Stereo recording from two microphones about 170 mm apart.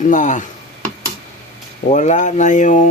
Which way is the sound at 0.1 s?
50° left (ahead or behind).